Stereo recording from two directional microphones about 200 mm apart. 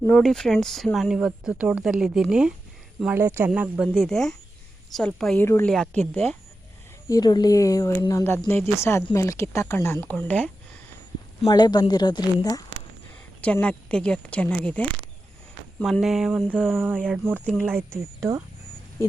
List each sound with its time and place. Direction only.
0.1 s speech: centre (ahead or behind)
7.1 s speech: 20° left (ahead or behind)
11.4 s speech: 20° left (ahead or behind)
13.4 s speech: 5° left (ahead or behind); by 18.4 s 15° right (ahead or behind)